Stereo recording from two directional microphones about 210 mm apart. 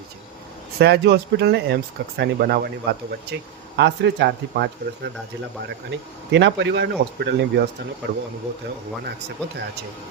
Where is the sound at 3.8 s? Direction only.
55° right (ahead or behind).